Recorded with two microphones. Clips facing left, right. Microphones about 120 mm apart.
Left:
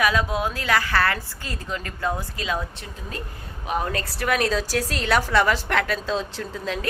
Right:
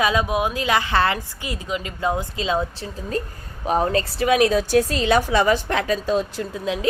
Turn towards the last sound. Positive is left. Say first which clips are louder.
# right 5 dB
turn(degrees=-15)  # may be behind; listen again after turning